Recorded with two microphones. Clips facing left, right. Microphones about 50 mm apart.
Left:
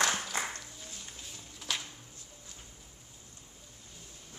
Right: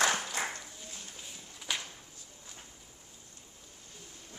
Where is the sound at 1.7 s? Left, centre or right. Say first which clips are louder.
Even; centre.